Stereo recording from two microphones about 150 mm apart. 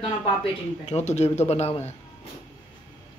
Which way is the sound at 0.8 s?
50° left (ahead or behind).